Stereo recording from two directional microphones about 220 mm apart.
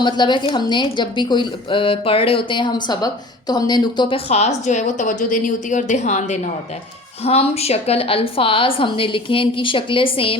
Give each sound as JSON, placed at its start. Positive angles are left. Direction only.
{"t": 0.0, "sound": "a woman's voice", "side_deg": 20}